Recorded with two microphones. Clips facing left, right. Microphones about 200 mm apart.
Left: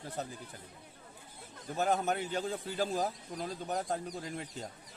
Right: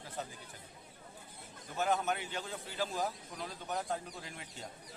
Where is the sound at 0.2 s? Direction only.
40° left (ahead or behind).